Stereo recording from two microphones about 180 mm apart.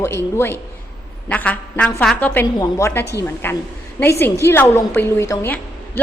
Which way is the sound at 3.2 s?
10° left (ahead or behind).